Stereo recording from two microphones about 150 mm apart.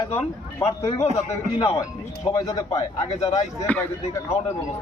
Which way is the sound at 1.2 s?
45° left (ahead or behind).